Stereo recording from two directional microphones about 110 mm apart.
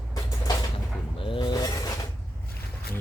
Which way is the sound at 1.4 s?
35° left (ahead or behind).